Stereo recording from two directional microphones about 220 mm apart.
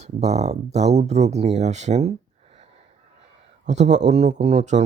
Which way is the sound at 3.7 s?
30° right (ahead or behind).